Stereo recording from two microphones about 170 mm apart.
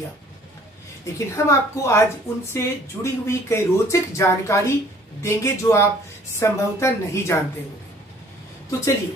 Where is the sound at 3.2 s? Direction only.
15° left (ahead or behind).